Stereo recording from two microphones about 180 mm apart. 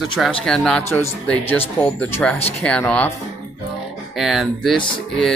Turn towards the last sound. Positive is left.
turn(degrees=0)  # may be behind; listen again after turning